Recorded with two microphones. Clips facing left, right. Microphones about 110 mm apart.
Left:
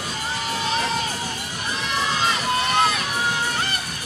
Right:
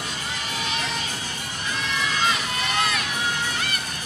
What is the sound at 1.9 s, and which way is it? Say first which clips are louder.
Run: left 2 dB; 40° left (ahead or behind).